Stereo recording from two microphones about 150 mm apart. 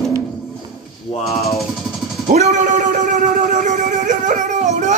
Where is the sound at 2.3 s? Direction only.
45° right (ahead or behind).